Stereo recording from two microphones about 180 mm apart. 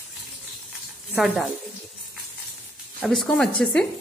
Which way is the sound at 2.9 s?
Centre (ahead or behind).